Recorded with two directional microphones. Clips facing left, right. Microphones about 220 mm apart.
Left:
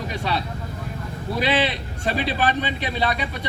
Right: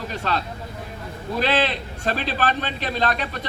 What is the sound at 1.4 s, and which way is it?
A man's voice, 10° left (ahead or behind).